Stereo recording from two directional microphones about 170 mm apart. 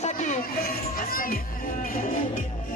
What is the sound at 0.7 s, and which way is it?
Speech, 60° left (ahead or behind).